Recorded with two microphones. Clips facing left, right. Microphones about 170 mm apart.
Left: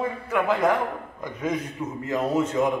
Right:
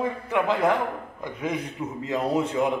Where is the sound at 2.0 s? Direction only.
15° right (ahead or behind).